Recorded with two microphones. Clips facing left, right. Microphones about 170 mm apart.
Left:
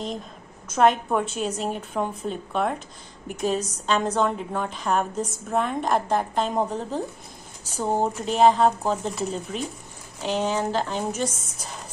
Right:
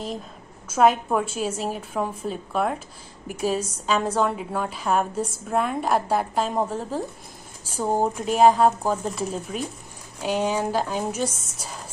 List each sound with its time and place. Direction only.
0.7 s a woman's voice: 5° right (ahead or behind)